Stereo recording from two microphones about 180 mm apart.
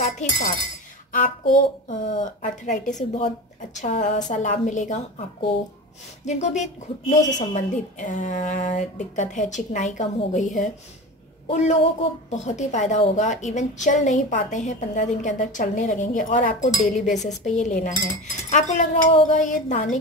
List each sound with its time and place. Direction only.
0.0 s chink: 45° left (ahead or behind)
1.1 s a woman's voice: 45° left (ahead or behind)
6.2 s a woman's voice: 40° left (ahead or behind)